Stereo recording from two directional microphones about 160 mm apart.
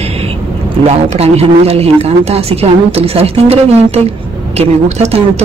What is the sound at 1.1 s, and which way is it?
A woman's voice, 40° right (ahead or behind).